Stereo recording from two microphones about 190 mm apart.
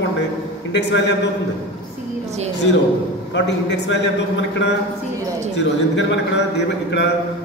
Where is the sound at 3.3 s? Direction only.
65° left (ahead or behind).